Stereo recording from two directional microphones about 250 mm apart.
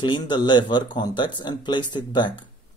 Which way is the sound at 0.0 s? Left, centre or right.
Centre.